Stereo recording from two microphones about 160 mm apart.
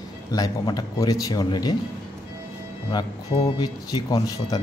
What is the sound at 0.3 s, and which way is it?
A man's voice, 25° left (ahead or behind).